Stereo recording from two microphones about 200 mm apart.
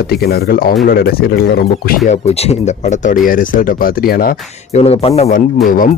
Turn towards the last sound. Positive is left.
turn(degrees=45)  # may be behind; listen again after turning